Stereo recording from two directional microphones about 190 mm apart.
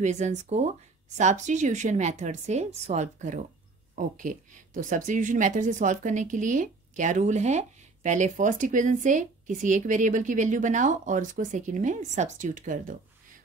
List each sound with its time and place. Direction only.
0.0 s a woman's voice: 40° right (ahead or behind)